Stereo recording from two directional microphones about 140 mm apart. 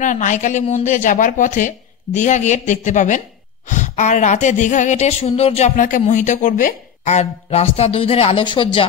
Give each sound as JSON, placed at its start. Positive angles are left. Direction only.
{"t": 0.0, "sound": "a woman's voice", "side_deg": 60}
{"t": 5.8, "sound": "speech", "side_deg": 65}